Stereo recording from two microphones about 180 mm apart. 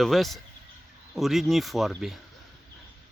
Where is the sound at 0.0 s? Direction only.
Centre (ahead or behind).